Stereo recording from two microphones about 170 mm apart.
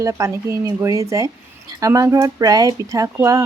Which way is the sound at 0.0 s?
15° right (ahead or behind).